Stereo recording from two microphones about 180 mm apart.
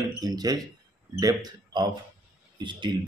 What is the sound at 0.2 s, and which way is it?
Speech, 20° right (ahead or behind).